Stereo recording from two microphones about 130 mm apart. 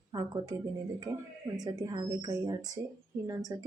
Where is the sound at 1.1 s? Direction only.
15° right (ahead or behind).